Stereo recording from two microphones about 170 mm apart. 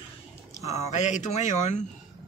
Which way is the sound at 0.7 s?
40° left (ahead or behind).